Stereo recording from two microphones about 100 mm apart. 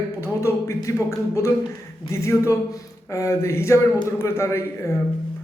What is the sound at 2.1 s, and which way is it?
Speech, 30° left (ahead or behind).